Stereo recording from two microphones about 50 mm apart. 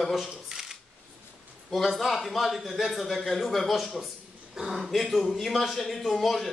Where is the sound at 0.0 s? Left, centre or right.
Centre.